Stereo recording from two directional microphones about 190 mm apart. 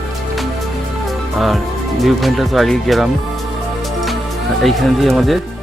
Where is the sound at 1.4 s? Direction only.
Centre (ahead or behind).